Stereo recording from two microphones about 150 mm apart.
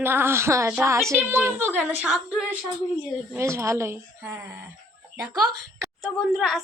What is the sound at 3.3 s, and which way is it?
Speech, 20° right (ahead or behind).